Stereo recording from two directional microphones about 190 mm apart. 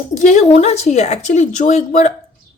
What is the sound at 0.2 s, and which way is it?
Speech, 40° left (ahead or behind).